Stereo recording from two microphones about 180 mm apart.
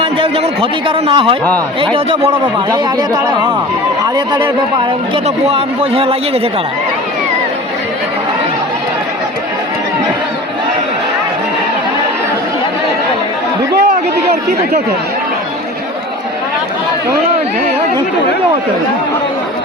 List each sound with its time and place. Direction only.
0.0 s a man's voice: 30° right (ahead or behind)
4.0 s a man's voice: 20° right (ahead or behind)
5.1 s speech: 30° right (ahead or behind)